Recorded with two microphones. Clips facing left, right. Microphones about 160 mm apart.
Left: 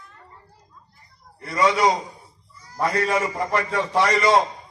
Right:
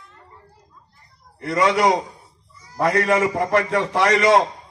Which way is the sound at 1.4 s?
65° right (ahead or behind).